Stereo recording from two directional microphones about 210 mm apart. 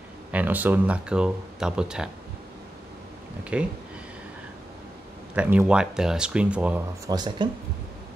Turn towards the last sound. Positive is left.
turn(degrees=-20)  # may be behind; listen again after turning